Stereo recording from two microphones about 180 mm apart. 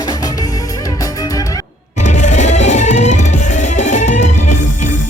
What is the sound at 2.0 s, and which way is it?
Music, 40° left (ahead or behind).